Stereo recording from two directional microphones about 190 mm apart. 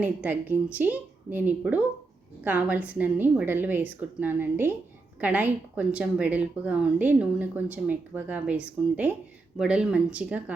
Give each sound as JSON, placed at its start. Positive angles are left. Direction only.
{"t": 0.0, "sound": "a woman's voice", "side_deg": -10}